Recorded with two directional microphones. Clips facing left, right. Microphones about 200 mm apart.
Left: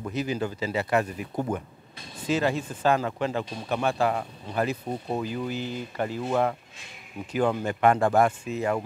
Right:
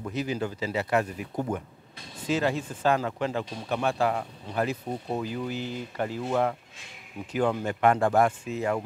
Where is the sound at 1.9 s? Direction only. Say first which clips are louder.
Left 1 dB; 10° left (ahead or behind).